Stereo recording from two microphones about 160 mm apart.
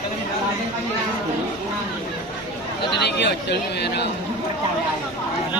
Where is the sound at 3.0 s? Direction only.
90° left.